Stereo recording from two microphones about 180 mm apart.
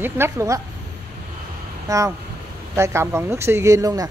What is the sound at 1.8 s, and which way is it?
Speech, 15° right (ahead or behind).